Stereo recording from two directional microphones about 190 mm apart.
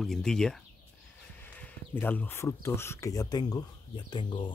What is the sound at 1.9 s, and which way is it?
Speech, 10° left (ahead or behind).